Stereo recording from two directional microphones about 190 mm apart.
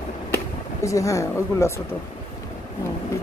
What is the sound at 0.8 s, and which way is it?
Speech, 15° left (ahead or behind).